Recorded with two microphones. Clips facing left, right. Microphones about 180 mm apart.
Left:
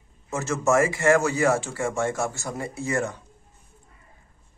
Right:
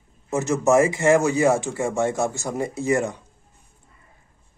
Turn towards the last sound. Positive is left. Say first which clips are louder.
# right 5 dB
turn(degrees=-15)  # may be behind; listen again after turning